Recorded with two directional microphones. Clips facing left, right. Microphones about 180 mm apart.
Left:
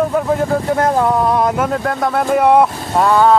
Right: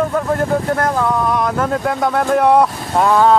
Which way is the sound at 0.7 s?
25° left (ahead or behind).